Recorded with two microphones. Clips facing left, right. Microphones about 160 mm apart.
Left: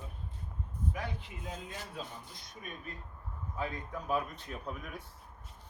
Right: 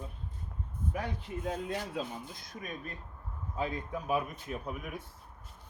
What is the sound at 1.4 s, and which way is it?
Speech, 60° right (ahead or behind).